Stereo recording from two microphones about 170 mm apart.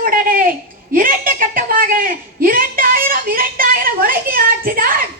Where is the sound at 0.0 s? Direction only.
60° right (ahead or behind).